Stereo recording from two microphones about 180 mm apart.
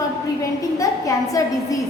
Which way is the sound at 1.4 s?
20° left (ahead or behind).